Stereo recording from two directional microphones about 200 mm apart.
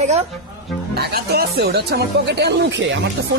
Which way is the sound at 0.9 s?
55° right (ahead or behind).